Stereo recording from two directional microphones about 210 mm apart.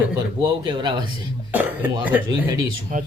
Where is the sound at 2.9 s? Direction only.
40° right (ahead or behind).